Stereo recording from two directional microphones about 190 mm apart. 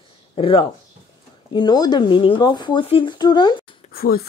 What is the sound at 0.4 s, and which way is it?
Speech, 25° left (ahead or behind).